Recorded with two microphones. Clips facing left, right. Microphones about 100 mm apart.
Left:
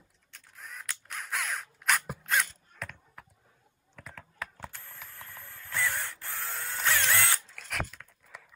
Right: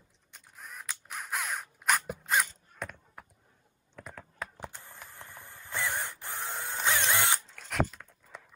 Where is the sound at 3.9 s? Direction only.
Centre (ahead or behind).